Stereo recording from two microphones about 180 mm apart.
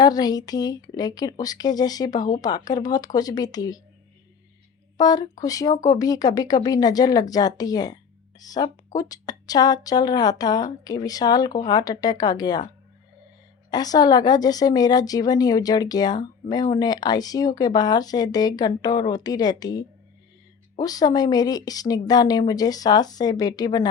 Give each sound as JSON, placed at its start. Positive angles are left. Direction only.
{"t": 0.0, "sound": "a woman's voice", "side_deg": 20}
{"t": 4.9, "sound": "a woman's voice", "side_deg": 20}